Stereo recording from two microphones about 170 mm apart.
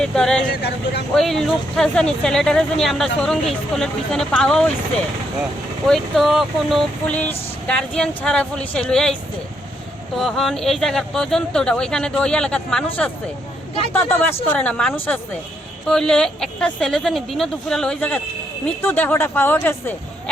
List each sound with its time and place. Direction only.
0.0 s speech: 5° left (ahead or behind)
0.5 s speech: 75° left (ahead or behind)
1.1 s speech: centre (ahead or behind)
5.8 s speech: centre (ahead or behind)
10.2 s speech: centre (ahead or behind)